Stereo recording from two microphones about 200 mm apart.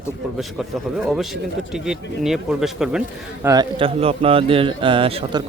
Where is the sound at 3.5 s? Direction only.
25° right (ahead or behind).